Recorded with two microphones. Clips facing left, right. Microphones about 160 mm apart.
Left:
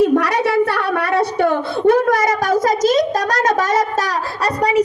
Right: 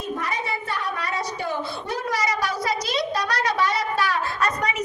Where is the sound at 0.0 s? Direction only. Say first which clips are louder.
Left 14 dB; 85° left; by 3.8 s 45° left (ahead or behind).